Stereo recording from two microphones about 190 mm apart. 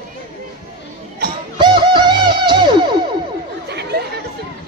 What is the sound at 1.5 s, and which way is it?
Music, 25° right (ahead or behind).